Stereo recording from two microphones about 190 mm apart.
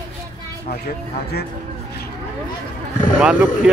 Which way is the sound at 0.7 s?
55° left (ahead or behind).